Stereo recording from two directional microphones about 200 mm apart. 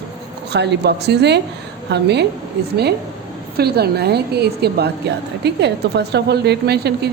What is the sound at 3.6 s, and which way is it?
A woman's voice, 50° right (ahead or behind).